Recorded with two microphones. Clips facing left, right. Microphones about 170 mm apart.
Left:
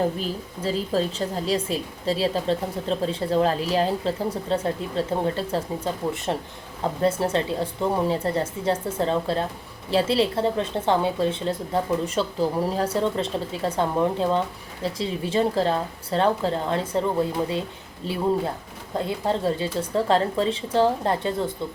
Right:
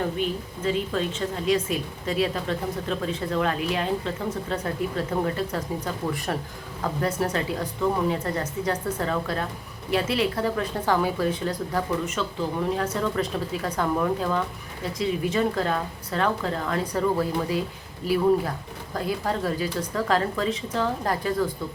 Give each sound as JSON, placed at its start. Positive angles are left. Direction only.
{"t": 0.0, "sound": "a woman's voice", "side_deg": 35}